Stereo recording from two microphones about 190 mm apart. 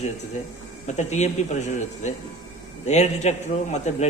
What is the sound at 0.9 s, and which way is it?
A man's voice, 35° left (ahead or behind).